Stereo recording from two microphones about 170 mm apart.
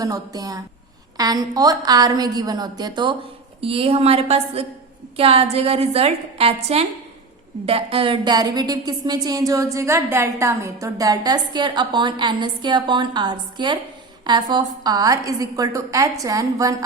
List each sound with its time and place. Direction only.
0.0 s a woman's voice: 20° right (ahead or behind)